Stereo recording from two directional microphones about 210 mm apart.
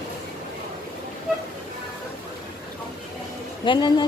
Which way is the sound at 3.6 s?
20° left (ahead or behind).